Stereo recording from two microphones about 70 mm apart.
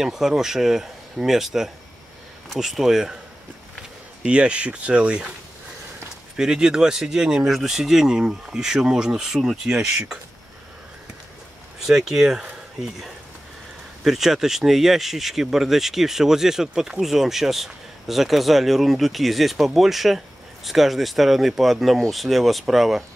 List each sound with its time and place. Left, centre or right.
0.0 s speech: centre
4.2 s speech: centre
6.3 s speech: centre
11.8 s speech: centre